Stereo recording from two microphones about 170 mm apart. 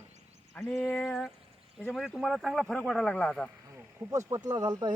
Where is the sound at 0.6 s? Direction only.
15° left (ahead or behind).